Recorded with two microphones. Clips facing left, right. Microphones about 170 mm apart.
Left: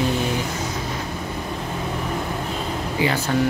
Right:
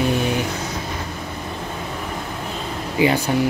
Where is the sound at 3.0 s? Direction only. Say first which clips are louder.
Right 5 dB; 15° right (ahead or behind).